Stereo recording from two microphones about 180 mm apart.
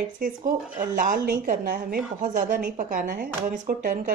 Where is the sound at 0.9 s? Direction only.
50° right (ahead or behind).